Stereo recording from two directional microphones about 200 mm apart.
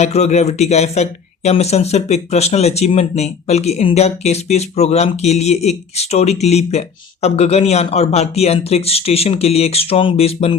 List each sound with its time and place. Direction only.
0.0 s speech: 35° left (ahead or behind)